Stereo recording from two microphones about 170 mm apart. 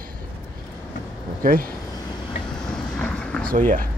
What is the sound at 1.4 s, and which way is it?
Speech, 55° right (ahead or behind).